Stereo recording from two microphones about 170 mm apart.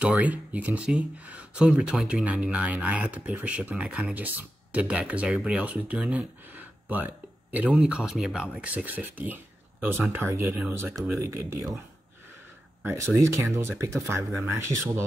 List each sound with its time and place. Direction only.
0.0 s speech: 10° right (ahead or behind)
12.8 s speech: 15° right (ahead or behind)